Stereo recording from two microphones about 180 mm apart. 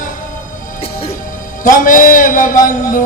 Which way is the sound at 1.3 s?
45° left (ahead or behind).